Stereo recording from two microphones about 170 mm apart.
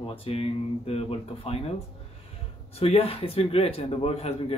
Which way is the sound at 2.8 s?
35° left (ahead or behind).